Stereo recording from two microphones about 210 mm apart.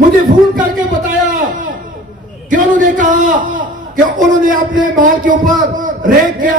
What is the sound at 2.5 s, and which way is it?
A man's voice, 40° right (ahead or behind).